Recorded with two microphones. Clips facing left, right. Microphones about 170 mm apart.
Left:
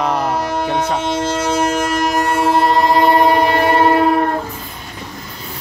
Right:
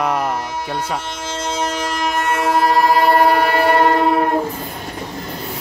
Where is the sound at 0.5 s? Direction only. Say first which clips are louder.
Left 5 dB; 65° left (ahead or behind); by 3.9 s 15° left (ahead or behind).